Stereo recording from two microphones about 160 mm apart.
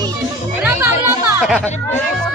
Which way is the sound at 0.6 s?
10° right (ahead or behind).